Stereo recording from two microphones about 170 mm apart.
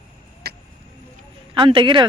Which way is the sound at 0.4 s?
65° right (ahead or behind).